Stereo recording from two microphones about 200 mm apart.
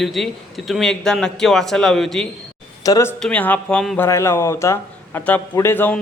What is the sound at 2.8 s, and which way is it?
Speech, 15° left (ahead or behind).